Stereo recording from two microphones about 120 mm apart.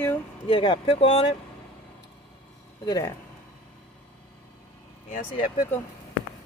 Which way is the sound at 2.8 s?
30° left (ahead or behind).